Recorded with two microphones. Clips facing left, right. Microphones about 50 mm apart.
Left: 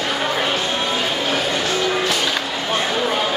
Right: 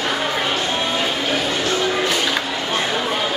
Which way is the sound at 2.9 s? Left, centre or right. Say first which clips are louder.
Left 1 dB; centre.